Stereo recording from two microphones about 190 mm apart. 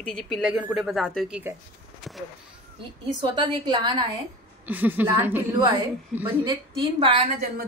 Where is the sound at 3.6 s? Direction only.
25° right (ahead or behind).